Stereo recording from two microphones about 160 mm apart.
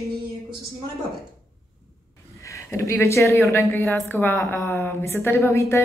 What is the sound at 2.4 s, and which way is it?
A woman's voice, 20° left (ahead or behind).